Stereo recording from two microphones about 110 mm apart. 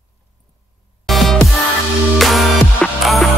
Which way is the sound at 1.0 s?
Centre (ahead or behind).